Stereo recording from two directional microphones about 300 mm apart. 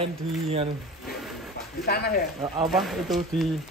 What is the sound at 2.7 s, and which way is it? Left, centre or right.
Speech, centre.